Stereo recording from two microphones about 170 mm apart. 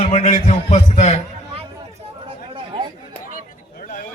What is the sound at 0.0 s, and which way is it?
A man's voice, 40° left (ahead or behind).